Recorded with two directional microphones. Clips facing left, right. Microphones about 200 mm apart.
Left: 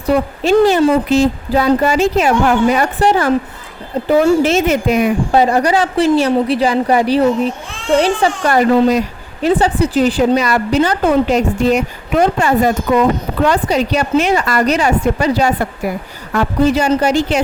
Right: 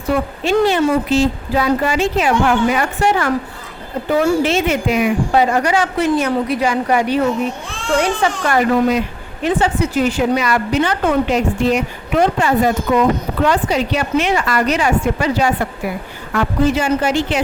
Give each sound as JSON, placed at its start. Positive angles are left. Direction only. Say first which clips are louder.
{"t": 0.1, "sound": "speech", "louder": "left 4 dB", "side_deg": 40}
{"t": 4.4, "sound": "speech", "louder": "left 3 dB", "side_deg": 40}